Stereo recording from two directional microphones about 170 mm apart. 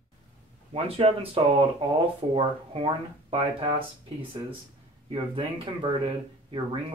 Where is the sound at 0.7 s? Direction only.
35° right (ahead or behind).